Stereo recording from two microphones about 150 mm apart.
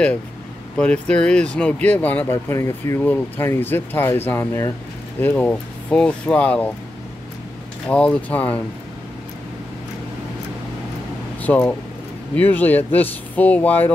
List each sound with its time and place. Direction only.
0.7 s speech: 10° left (ahead or behind)
7.9 s speech: 10° left (ahead or behind)
11.4 s speech: 10° left (ahead or behind)